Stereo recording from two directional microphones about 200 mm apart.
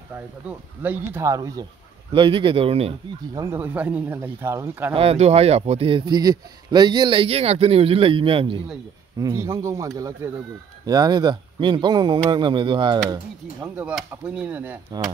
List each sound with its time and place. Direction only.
0.5 s a man's voice: 10° right (ahead or behind); by 2.9 s 30° right (ahead or behind)
3.3 s speech: 15° right (ahead or behind)
4.9 s a man's voice: 30° right (ahead or behind)
9.2 s a man's voice: 15° right (ahead or behind)
13.8 s speech: 5° right (ahead or behind)